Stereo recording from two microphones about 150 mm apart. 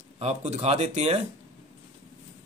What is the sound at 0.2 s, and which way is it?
Speech, 50° right (ahead or behind).